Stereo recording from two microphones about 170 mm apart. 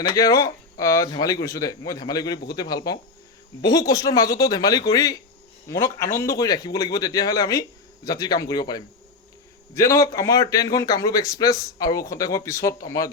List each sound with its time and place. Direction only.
0.1 s speech: 20° left (ahead or behind)